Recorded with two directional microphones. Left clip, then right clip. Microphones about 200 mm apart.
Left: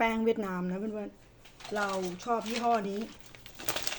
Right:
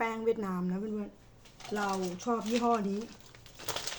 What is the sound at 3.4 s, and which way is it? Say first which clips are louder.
Crushing: left 3 dB; 50° left (ahead or behind).